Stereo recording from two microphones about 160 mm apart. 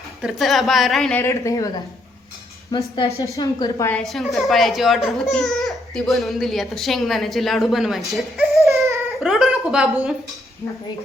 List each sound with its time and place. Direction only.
0.2 s speech: centre (ahead or behind)
1.2 s a woman's voice: 20° left (ahead or behind)
3.9 s speech: centre (ahead or behind)
9.2 s a sound: centre (ahead or behind)